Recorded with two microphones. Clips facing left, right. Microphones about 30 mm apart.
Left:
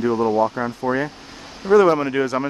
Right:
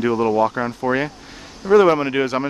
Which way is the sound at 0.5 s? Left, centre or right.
Centre.